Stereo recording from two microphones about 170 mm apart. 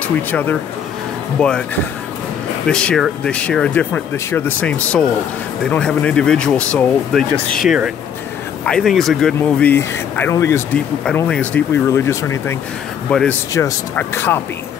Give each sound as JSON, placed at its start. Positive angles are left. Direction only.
{"t": 0.3, "sound": "speech", "side_deg": 10}
{"t": 2.7, "sound": "speech", "side_deg": 5}
{"t": 11.2, "sound": "speech", "side_deg": 5}
{"t": 11.9, "sound": "speech", "side_deg": 15}
{"t": 13.1, "sound": "speech", "side_deg": 5}
{"t": 13.5, "sound": "speech", "side_deg": 15}